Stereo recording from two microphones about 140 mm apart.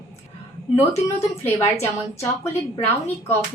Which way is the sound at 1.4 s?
20° left (ahead or behind).